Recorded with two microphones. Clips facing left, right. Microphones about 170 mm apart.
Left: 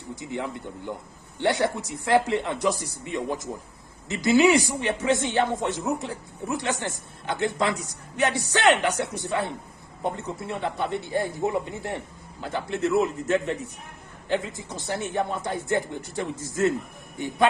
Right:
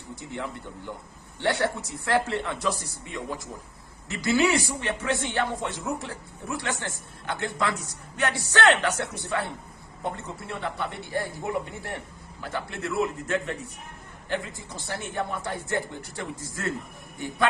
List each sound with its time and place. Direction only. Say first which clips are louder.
0.2 s speech: left 3 dB; 15° left (ahead or behind)